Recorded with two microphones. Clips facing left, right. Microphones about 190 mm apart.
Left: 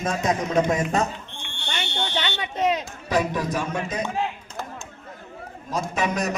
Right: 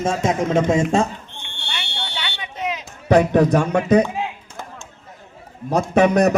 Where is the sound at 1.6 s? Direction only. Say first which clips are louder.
Left 3 dB; 40° left (ahead or behind).